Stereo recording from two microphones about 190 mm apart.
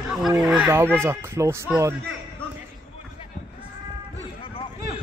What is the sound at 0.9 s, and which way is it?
Speech, 15° right (ahead or behind).